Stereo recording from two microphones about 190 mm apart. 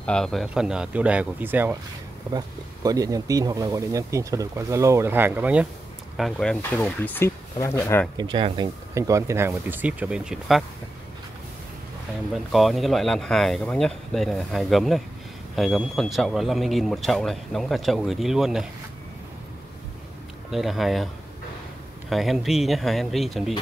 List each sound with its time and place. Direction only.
0.0 s speech: 5° left (ahead or behind)
8.2 s speech: 25° right (ahead or behind)
8.9 s speech: 15° right (ahead or behind)
12.5 s speech: centre (ahead or behind)
20.5 s speech: centre (ahead or behind)
22.1 s speech: centre (ahead or behind)